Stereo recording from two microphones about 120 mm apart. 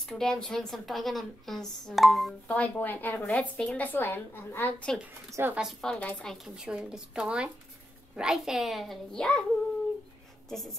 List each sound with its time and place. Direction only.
0.0 s a woman's voice: 5° left (ahead or behind)
2.4 s a woman's voice: 10° left (ahead or behind)
5.3 s a woman's voice: 20° right (ahead or behind)
5.6 s a woman's voice: centre (ahead or behind)